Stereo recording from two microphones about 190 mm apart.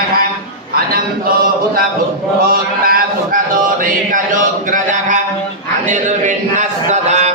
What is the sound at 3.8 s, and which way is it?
Chant, 45° right (ahead or behind).